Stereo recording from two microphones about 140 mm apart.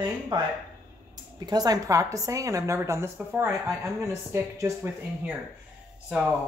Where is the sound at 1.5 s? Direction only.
30° right (ahead or behind).